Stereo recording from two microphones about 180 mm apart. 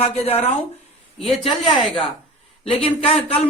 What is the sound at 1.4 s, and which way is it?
A man's voice, 30° left (ahead or behind).